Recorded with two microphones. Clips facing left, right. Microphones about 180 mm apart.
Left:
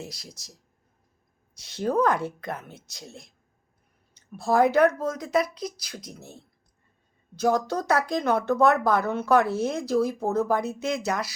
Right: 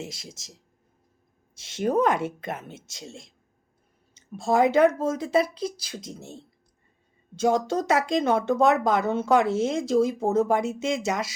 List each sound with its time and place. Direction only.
0.0 s speech: 25° right (ahead or behind)
1.5 s speech: 25° right (ahead or behind)